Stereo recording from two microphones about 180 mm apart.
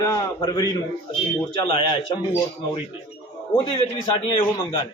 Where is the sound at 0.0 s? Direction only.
20° left (ahead or behind).